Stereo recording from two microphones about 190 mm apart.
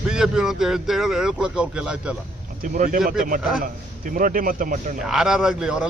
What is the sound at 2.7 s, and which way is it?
Speech, 45° right (ahead or behind).